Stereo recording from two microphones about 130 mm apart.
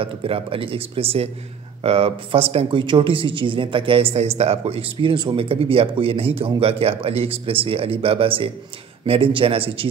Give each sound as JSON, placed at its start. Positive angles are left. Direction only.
{"t": 0.0, "sound": "speech", "side_deg": -45}